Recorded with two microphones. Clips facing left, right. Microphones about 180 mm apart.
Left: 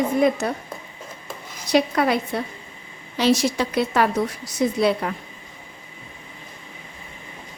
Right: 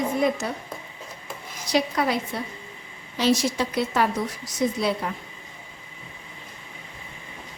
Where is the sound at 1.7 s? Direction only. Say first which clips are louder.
Left 4 dB; 60° left (ahead or behind).